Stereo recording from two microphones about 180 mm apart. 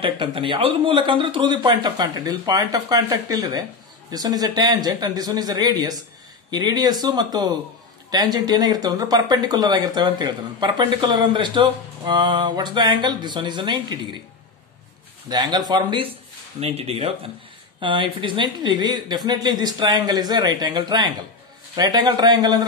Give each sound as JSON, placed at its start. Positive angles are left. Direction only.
{"t": 0.0, "sound": "speech", "side_deg": -30}
{"t": 15.2, "sound": "speech", "side_deg": -25}